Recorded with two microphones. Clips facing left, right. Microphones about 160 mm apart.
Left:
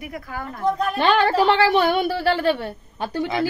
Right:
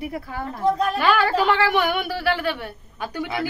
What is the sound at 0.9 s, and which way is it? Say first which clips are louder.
A woman's voice: left 2 dB; 30° left (ahead or behind).